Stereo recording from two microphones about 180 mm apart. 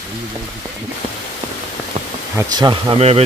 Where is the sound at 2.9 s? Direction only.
35° right (ahead or behind).